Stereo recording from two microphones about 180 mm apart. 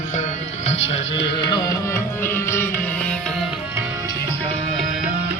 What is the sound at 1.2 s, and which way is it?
Music, 25° left (ahead or behind).